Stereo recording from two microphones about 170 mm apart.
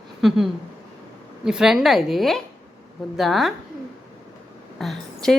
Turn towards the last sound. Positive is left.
turn(degrees=0)  # may be behind; listen again after turning